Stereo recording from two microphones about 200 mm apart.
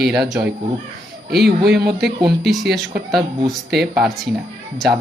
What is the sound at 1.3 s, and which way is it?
Speech, 55° right (ahead or behind).